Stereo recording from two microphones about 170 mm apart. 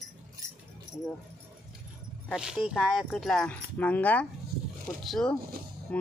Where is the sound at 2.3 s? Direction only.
5° right (ahead or behind).